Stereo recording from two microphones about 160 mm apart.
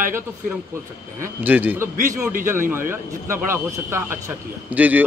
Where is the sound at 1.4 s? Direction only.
10° right (ahead or behind).